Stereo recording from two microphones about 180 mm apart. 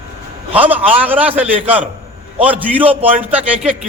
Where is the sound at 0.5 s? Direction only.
10° right (ahead or behind).